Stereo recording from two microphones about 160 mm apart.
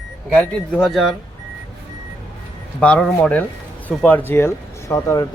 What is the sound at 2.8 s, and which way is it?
Speech, 5° left (ahead or behind).